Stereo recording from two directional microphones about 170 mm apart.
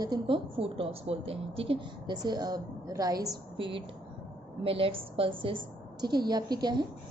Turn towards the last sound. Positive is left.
turn(degrees=-25)  # may be behind; listen again after turning